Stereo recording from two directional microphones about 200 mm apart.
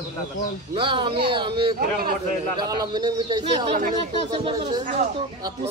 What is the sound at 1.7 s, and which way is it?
Speech, 50° right (ahead or behind).